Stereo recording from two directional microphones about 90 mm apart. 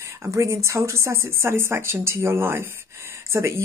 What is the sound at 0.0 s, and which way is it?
Speech, 30° right (ahead or behind).